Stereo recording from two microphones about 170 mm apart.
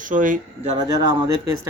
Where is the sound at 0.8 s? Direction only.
20° right (ahead or behind).